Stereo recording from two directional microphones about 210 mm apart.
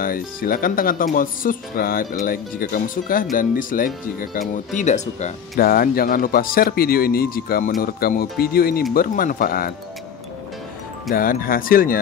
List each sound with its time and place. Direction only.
0.0 s speech: 45° left (ahead or behind)
11.1 s speech: 40° left (ahead or behind)